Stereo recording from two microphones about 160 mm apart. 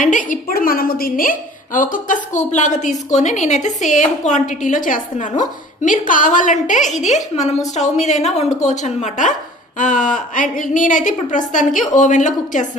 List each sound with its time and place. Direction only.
0.0 s a woman's voice: 55° left (ahead or behind)